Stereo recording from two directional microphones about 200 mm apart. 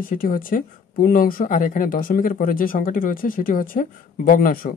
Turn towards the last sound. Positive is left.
turn(degrees=45)  # may be behind; listen again after turning